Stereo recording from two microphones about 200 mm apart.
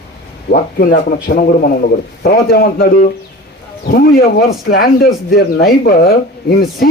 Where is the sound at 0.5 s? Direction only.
50° left (ahead or behind).